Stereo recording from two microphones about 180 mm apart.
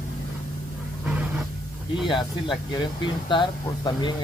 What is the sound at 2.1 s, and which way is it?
Speech, 25° left (ahead or behind).